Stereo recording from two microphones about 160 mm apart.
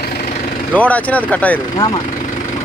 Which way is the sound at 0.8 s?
10° left (ahead or behind).